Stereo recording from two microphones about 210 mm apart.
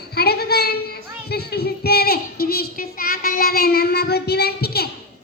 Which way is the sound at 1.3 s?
50° left (ahead or behind).